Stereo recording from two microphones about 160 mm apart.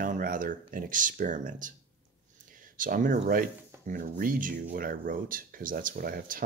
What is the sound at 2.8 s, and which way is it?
Speech, 60° right (ahead or behind).